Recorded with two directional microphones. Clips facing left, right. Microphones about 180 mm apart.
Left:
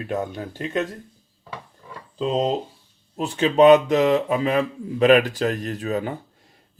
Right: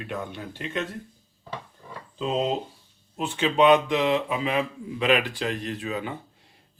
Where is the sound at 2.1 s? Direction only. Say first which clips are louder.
Left 4 dB; 35° left (ahead or behind).